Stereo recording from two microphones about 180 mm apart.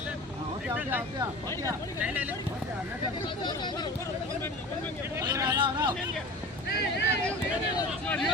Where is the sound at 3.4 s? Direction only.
25° left (ahead or behind).